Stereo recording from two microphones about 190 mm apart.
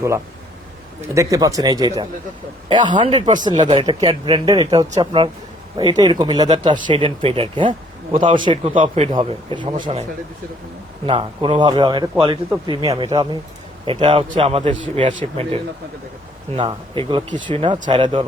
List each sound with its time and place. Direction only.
1.1 s a man's voice: 15° right (ahead or behind)